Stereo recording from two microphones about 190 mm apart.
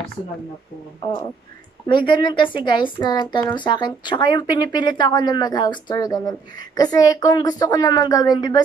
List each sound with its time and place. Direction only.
1.9 s speech: 25° left (ahead or behind)